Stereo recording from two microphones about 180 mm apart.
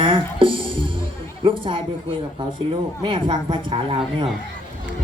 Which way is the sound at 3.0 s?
25° right (ahead or behind).